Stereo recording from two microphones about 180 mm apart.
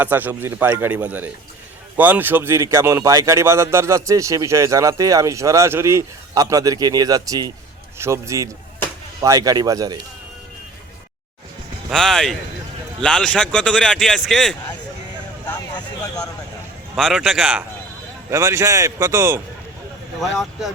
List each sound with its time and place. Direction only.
0.0 s a man's voice: 10° right (ahead or behind)
11.9 s speech: centre (ahead or behind)
15.4 s a sound: 20° left (ahead or behind)
16.9 s speech: centre (ahead or behind)
18.3 s speech: 15° right (ahead or behind)
20.1 s speech: centre (ahead or behind)